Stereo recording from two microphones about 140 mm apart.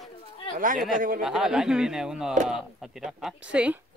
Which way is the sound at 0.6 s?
75° right (ahead or behind).